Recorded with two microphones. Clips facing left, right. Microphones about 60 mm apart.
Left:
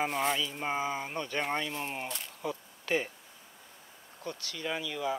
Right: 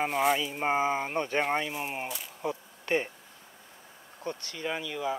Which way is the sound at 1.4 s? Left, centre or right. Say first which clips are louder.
Right 1 dB; centre.